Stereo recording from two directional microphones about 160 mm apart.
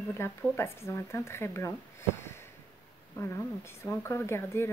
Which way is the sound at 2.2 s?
15° left (ahead or behind).